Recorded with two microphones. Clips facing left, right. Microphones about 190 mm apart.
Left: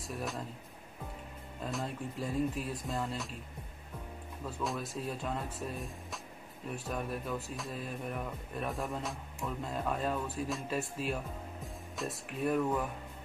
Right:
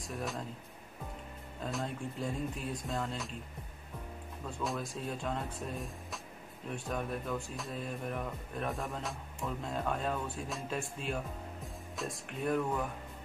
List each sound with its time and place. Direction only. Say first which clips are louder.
1.6 s speech: even; centre (ahead or behind)
4.5 s speech: even; centre (ahead or behind)